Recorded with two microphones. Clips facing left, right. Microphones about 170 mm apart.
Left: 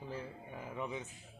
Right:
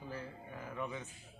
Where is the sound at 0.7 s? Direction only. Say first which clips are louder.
Left 1 dB; 20° left (ahead or behind).